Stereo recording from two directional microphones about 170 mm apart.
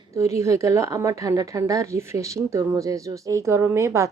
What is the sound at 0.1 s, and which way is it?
A woman's voice, 15° right (ahead or behind).